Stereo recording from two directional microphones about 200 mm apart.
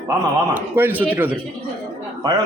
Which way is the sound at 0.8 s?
10° right (ahead or behind).